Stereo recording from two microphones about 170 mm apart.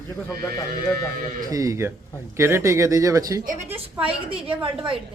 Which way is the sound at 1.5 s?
20° right (ahead or behind).